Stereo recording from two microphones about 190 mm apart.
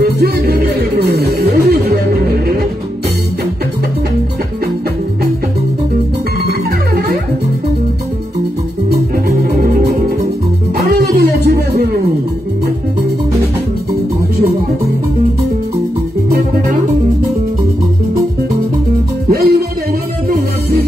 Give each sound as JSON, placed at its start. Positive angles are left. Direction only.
{"t": 0.0, "sound": "music", "side_deg": -55}
{"t": 8.9, "sound": "music", "side_deg": -60}
{"t": 19.3, "sound": "music", "side_deg": -55}